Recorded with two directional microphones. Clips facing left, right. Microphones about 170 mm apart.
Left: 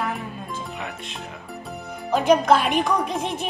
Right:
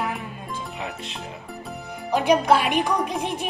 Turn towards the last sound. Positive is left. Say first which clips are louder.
# left 1 dB
turn(degrees=-10)  # may be behind; listen again after turning